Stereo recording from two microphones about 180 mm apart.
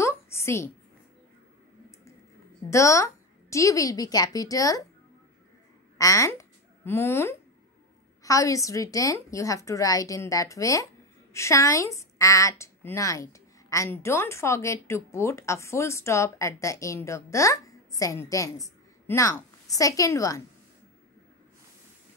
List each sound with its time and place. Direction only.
0.0 s a sound: 15° left (ahead or behind)
2.7 s a woman's voice: 15° left (ahead or behind)
5.9 s a child's voice: 20° left (ahead or behind)